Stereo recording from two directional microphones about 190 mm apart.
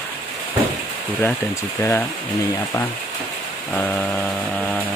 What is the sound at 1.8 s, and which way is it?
Speech, 10° left (ahead or behind).